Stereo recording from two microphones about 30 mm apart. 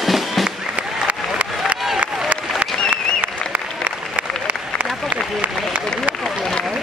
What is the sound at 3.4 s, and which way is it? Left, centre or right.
Applause, left.